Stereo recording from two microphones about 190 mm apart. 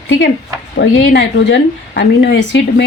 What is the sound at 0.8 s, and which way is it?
A woman's voice, 70° left (ahead or behind).